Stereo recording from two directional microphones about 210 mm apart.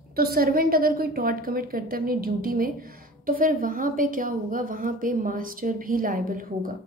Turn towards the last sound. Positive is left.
turn(degrees=-40)  # may be behind; listen again after turning